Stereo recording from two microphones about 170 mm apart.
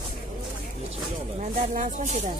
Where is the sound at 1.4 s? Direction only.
50° right (ahead or behind).